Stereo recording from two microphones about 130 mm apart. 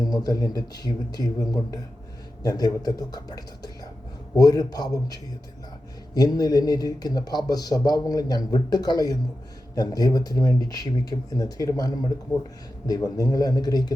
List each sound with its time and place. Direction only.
0.0 s speech: 30° left (ahead or behind)